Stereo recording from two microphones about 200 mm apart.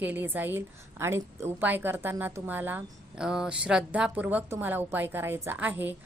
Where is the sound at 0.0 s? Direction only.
10° right (ahead or behind).